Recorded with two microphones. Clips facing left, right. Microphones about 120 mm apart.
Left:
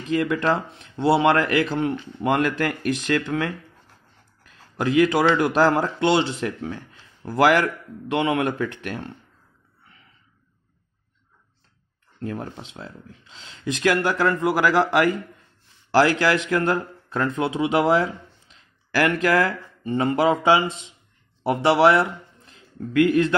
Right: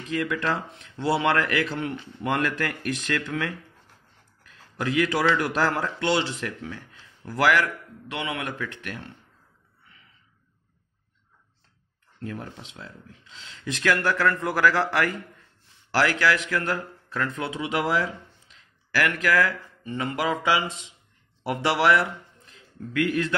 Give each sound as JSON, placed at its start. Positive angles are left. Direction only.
{"t": 0.1, "sound": "speech", "side_deg": 25}
{"t": 4.4, "sound": "a sound", "side_deg": 25}
{"t": 5.1, "sound": "a man's voice", "side_deg": 25}
{"t": 12.2, "sound": "a man's voice", "side_deg": 35}
{"t": 13.7, "sound": "speech", "side_deg": 15}
{"t": 16.4, "sound": "a man's voice", "side_deg": 40}
{"t": 16.7, "sound": "a man's voice", "side_deg": 25}